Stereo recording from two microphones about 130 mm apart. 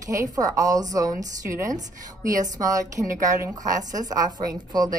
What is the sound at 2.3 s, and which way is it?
Speech, 25° right (ahead or behind).